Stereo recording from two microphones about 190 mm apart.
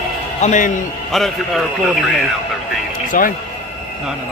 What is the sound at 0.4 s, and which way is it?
Speech, 40° left (ahead or behind).